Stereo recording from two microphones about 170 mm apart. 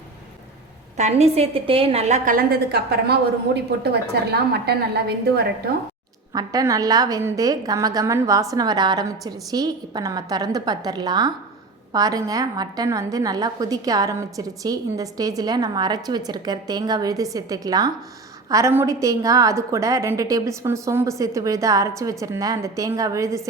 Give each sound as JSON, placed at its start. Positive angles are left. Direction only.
{"t": 0.9, "sound": "a woman's voice", "side_deg": -40}
{"t": 6.3, "sound": "a woman's voice", "side_deg": -20}